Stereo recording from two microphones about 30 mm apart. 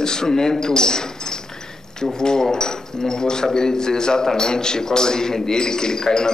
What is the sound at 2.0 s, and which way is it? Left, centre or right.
A man's voice, left.